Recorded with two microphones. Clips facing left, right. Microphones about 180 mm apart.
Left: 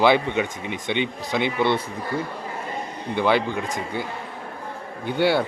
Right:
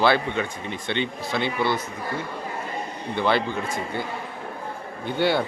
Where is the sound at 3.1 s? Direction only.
15° left (ahead or behind).